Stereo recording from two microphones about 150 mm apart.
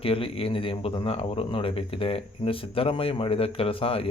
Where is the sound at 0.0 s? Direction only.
40° left (ahead or behind).